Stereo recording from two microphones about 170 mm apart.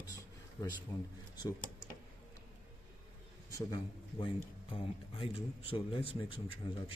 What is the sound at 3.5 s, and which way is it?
Speech, 20° left (ahead or behind).